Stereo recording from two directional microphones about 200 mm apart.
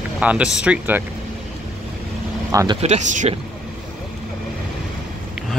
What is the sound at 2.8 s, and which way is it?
Speech, 35° right (ahead or behind).